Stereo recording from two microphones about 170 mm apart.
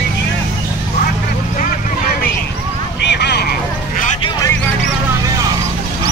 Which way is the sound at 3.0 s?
85° left.